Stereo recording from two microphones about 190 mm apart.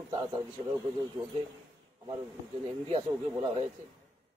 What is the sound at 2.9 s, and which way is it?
Speech, 30° right (ahead or behind).